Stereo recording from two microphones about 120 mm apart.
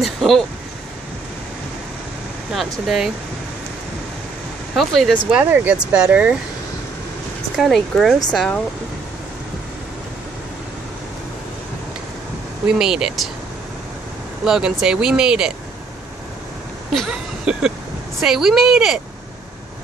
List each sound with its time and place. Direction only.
0.0 s a sound: centre (ahead or behind)
2.5 s speech: centre (ahead or behind)
4.7 s speech: centre (ahead or behind)
5.3 s speech: 15° right (ahead or behind)
7.5 s speech: centre (ahead or behind)
12.6 s speech: 5° right (ahead or behind)
14.4 s speech: 5° right (ahead or behind)
16.9 s vehicle: 5° right (ahead or behind)
18.2 s speech: 5° right (ahead or behind)